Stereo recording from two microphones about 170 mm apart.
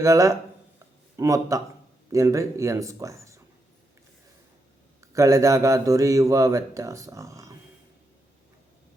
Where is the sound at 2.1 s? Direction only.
20° right (ahead or behind).